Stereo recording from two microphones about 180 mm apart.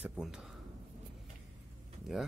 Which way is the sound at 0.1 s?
5° right (ahead or behind).